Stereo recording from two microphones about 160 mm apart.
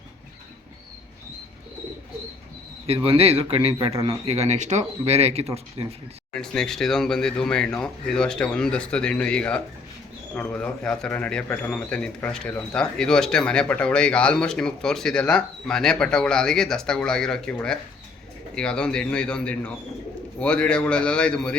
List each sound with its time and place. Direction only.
2.8 s speech: 35° right (ahead or behind)
6.3 s a man's voice: 5° left (ahead or behind)